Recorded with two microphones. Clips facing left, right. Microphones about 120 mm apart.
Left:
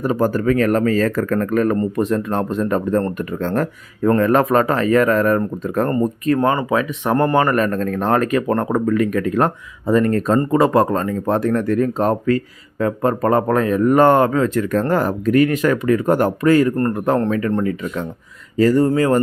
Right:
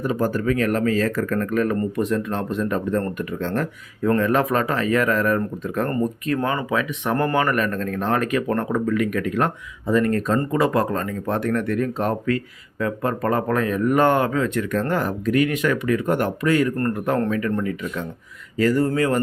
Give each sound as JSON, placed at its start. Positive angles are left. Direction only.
{"t": 0.0, "sound": "a man's voice", "side_deg": 45}